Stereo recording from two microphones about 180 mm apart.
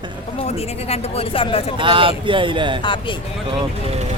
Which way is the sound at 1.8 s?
30° right (ahead or behind).